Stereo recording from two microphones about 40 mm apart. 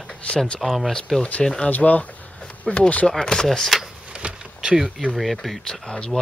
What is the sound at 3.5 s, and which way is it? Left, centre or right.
Speech, centre.